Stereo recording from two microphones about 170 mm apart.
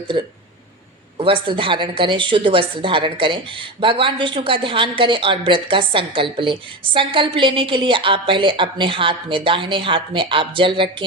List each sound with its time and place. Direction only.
0.1 s a woman's voice: 30° right (ahead or behind)